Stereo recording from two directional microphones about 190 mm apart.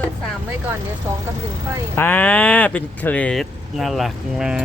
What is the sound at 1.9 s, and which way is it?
Speech, 10° left (ahead or behind).